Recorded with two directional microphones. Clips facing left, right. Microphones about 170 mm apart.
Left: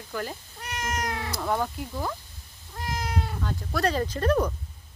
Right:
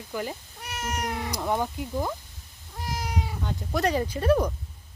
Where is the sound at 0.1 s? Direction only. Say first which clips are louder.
Right 1 dB; 15° right (ahead or behind).